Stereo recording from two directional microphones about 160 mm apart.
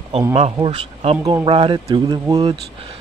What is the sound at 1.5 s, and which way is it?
Speech, 30° right (ahead or behind).